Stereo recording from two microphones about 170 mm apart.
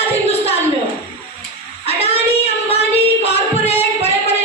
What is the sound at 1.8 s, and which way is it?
Child singing, 35° left (ahead or behind).